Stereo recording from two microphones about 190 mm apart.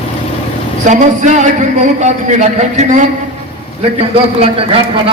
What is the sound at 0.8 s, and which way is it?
A man's voice, 40° right (ahead or behind).